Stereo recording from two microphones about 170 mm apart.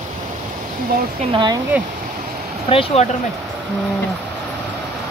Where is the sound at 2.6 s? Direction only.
35° left (ahead or behind).